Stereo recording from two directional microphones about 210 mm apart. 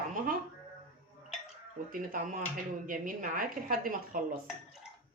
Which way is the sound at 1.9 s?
40° right (ahead or behind).